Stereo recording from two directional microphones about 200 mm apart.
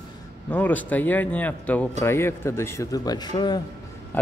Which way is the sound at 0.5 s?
10° left (ahead or behind).